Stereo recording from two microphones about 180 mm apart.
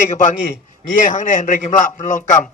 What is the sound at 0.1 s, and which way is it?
A man's voice, 45° left (ahead or behind).